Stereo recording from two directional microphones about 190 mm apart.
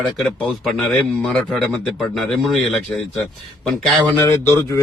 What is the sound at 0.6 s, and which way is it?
A man's voice, centre (ahead or behind).